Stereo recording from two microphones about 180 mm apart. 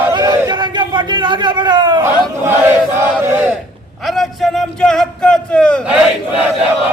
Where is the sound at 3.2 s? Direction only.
10° right (ahead or behind).